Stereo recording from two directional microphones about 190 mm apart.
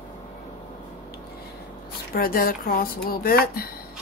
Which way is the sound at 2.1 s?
50° left (ahead or behind).